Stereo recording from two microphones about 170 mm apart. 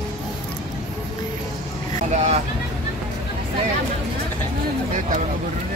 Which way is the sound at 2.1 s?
40° right (ahead or behind).